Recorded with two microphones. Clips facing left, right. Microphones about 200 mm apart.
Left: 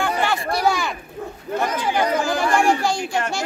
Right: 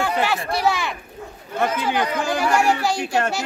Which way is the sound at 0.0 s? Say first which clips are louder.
Even; 5° right (ahead or behind).